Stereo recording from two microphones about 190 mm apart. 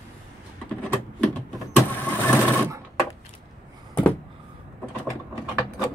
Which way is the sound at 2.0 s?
10° left (ahead or behind).